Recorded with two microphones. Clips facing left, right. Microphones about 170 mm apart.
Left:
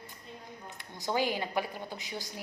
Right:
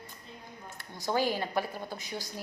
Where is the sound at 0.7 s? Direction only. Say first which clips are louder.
Right 1 dB; 20° left (ahead or behind).